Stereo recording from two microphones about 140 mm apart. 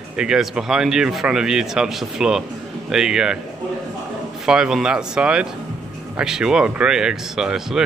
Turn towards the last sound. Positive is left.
turn(degrees=-5)  # may be behind; listen again after turning